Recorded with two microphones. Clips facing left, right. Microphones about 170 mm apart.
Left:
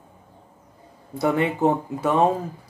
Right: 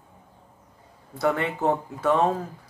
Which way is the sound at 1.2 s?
15° left (ahead or behind).